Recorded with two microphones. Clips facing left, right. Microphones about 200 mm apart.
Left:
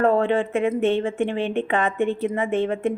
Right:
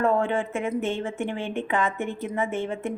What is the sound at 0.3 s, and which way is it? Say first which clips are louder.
Speech: left 6 dB; 60° left (ahead or behind).